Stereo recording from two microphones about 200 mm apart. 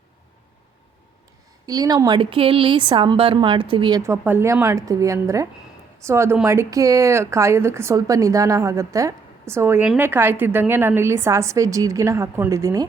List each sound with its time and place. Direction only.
1.6 s a woman's voice: 20° right (ahead or behind)